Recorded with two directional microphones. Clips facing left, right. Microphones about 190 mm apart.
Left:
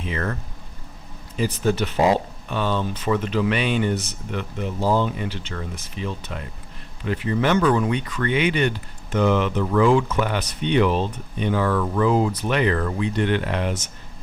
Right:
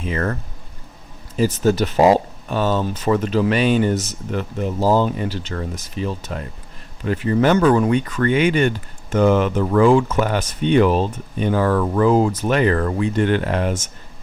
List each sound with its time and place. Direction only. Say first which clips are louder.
0.0 s speech: right 4 dB; 45° right (ahead or behind)
1.4 s speech: right 5 dB; 40° right (ahead or behind)